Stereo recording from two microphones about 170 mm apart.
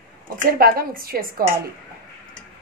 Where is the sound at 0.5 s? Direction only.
60° right (ahead or behind).